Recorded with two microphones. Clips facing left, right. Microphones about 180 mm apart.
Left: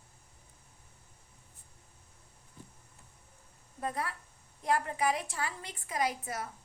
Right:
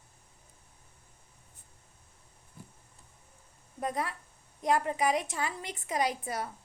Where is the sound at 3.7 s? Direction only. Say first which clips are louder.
Right 3 dB; 20° right (ahead or behind).